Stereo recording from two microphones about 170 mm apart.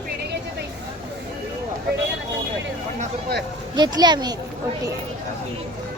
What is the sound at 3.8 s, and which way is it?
Speech, 25° right (ahead or behind).